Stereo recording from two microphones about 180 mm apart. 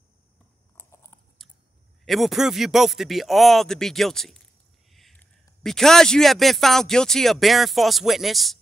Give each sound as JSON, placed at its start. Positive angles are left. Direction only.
{"t": 2.0, "sound": "speech", "side_deg": 0}
{"t": 4.9, "sound": "a sound", "side_deg": 0}
{"t": 5.6, "sound": "speech", "side_deg": 0}